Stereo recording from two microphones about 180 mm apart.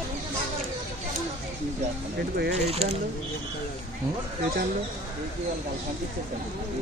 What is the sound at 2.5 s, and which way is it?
Speech, 35° right (ahead or behind).